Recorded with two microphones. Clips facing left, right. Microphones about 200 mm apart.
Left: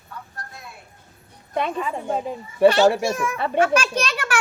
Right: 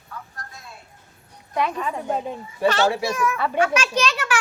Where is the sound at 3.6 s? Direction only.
55° left (ahead or behind).